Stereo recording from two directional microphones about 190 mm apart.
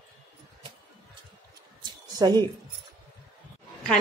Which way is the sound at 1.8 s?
20° right (ahead or behind).